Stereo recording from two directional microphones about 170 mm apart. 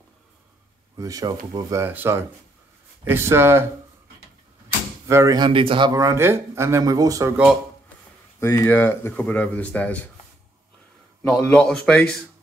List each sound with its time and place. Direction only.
0.9 s speech: 20° right (ahead or behind)
5.0 s speech: 15° right (ahead or behind)
8.4 s speech: 15° left (ahead or behind)
11.2 s speech: 5° left (ahead or behind)